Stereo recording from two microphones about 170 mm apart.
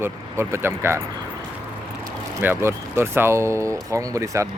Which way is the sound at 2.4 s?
15° right (ahead or behind).